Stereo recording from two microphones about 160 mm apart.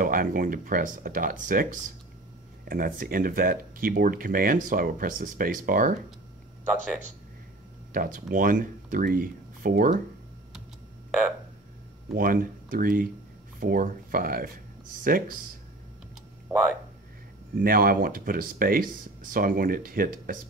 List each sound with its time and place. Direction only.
0.0 s speech: 60° right (ahead or behind)
7.9 s speech: 60° right (ahead or behind)
12.2 s speech: 60° right (ahead or behind)
16.5 s speech: 10° right (ahead or behind)
17.6 s speech: 65° right (ahead or behind)